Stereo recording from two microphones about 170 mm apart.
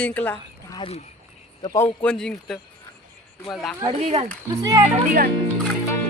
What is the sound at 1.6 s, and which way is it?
Speech, 15° left (ahead or behind).